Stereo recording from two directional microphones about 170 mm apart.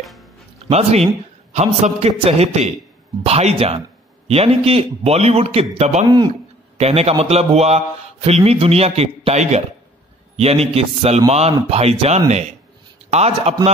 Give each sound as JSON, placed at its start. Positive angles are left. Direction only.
{"t": 0.0, "sound": "music", "side_deg": 0}
{"t": 0.7, "sound": "a man's voice", "side_deg": -40}
{"t": 6.0, "sound": "a man's voice", "side_deg": -25}
{"t": 6.8, "sound": "a man's voice", "side_deg": -35}